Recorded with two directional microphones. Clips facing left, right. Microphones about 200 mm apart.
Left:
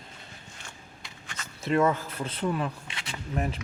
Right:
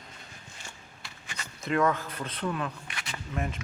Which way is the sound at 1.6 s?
25° left (ahead or behind).